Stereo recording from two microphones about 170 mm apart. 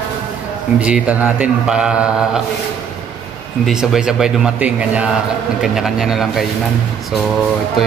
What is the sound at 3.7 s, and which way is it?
Speech, 5° right (ahead or behind).